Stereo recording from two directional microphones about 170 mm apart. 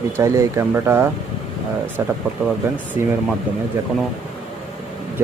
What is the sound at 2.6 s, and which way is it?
Speech, 15° right (ahead or behind).